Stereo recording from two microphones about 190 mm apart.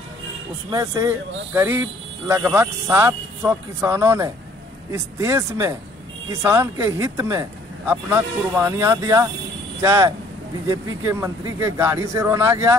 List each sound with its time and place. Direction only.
0.7 s speech: 20° right (ahead or behind)